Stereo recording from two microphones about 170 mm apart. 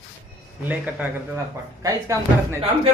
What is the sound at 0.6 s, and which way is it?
Speech, 10° right (ahead or behind).